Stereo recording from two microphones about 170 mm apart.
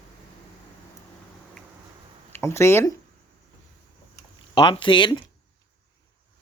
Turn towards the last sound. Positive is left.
turn(degrees=30)  # may be behind; listen again after turning